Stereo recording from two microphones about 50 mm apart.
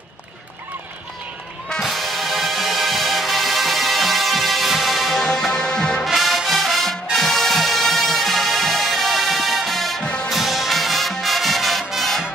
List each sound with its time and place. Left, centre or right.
1.8 s music: centre
6.0 s music: centre
10.0 s music: centre
10.3 s music: centre